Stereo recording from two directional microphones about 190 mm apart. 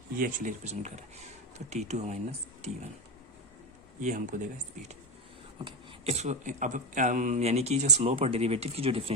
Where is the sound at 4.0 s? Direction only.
40° right (ahead or behind).